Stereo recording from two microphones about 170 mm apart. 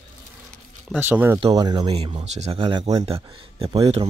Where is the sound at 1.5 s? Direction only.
25° right (ahead or behind).